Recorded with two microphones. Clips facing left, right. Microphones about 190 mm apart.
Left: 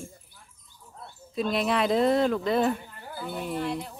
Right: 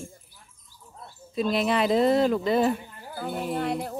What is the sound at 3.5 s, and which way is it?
Speech, 55° right (ahead or behind).